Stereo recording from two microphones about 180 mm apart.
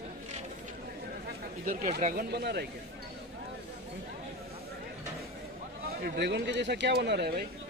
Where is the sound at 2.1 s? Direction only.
60° right (ahead or behind).